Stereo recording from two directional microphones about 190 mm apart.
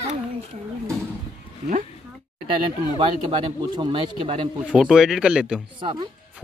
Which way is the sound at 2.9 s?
30° right (ahead or behind).